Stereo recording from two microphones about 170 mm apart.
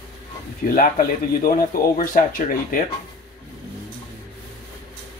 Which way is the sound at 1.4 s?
55° left (ahead or behind).